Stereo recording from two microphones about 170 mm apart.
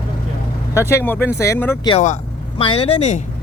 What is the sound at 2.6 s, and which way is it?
Speech, 35° left (ahead or behind).